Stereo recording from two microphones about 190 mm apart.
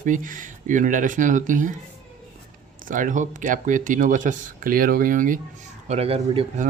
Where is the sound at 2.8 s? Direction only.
45° right (ahead or behind).